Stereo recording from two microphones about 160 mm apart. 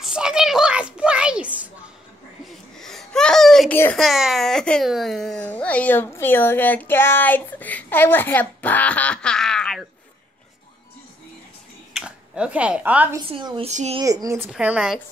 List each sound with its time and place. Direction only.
0.0 s a sound: 5° right (ahead or behind)
2.4 s a sound: centre (ahead or behind)
3.7 s a child's voice: 15° left (ahead or behind)
4.0 s a child's voice: centre (ahead or behind)
11.9 s speech: 5° right (ahead or behind)
13.3 s a woman's voice: 30° right (ahead or behind)
13.7 s speech: 45° right (ahead or behind)
14.0 s speech: 20° right (ahead or behind)
14.5 s a child's voice: 5° right (ahead or behind)